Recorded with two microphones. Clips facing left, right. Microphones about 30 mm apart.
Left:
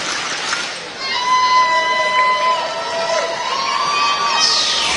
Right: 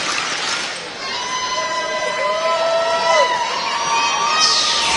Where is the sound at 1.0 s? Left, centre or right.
Left.